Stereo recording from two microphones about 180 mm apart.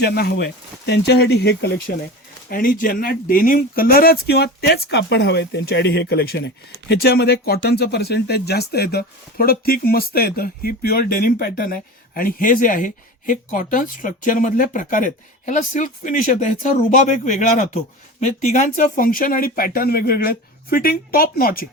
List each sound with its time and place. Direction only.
0.0 s speech: 60° left (ahead or behind)
2.5 s speech: 50° left (ahead or behind)